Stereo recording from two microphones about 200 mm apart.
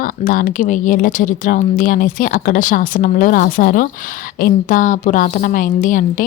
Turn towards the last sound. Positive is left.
turn(degrees=40)  # may be behind; listen again after turning